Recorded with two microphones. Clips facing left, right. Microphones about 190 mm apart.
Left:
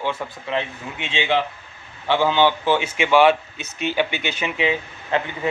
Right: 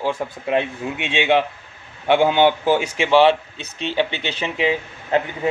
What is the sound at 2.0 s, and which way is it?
A man's voice, 55° right (ahead or behind).